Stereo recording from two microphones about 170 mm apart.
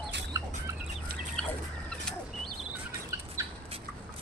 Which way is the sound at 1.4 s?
5° left (ahead or behind).